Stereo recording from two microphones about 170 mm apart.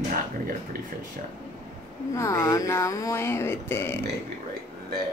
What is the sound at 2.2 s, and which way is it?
Speech, 20° left (ahead or behind).